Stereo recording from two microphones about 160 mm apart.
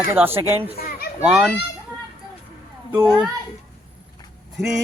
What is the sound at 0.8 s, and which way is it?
Children playing, 70° left (ahead or behind).